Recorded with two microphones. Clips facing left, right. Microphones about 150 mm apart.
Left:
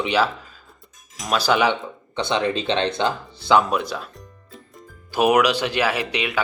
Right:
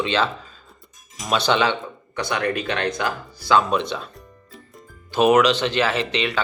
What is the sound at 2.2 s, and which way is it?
Speech, 25° left (ahead or behind).